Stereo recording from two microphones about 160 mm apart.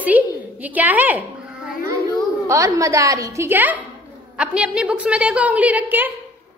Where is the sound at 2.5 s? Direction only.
20° right (ahead or behind).